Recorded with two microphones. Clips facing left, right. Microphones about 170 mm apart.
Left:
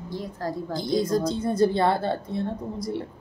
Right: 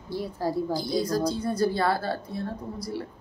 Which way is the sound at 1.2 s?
25° left (ahead or behind).